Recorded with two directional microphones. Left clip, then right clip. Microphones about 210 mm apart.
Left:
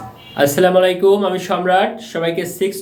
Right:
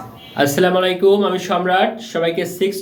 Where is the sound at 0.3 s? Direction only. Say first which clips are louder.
Left 3 dB; centre (ahead or behind).